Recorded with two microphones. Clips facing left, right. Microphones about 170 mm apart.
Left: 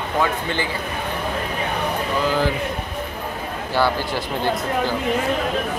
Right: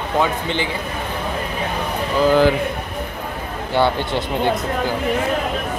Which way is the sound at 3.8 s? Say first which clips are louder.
Right 3 dB; 25° right (ahead or behind).